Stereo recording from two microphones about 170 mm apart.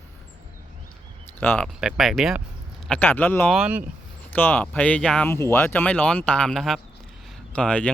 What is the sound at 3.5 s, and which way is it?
Speech, 5° right (ahead or behind).